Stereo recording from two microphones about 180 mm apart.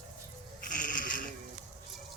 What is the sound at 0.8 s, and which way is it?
Goat, 45° left (ahead or behind).